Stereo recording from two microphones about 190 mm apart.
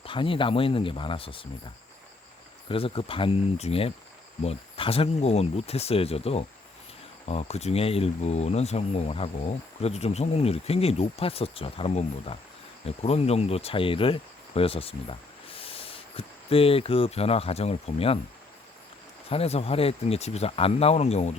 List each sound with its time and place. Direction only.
0.0 s speech: 25° left (ahead or behind)
2.6 s speech: 30° left (ahead or behind)
19.3 s speech: 30° left (ahead or behind)